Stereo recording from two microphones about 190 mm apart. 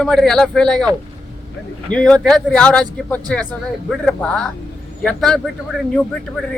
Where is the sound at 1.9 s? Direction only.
5° left (ahead or behind).